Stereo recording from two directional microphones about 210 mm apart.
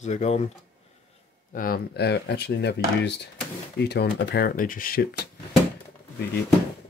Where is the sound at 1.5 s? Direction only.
40° left (ahead or behind).